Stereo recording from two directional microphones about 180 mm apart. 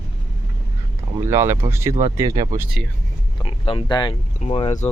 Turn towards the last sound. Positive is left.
turn(degrees=35)  # may be behind; listen again after turning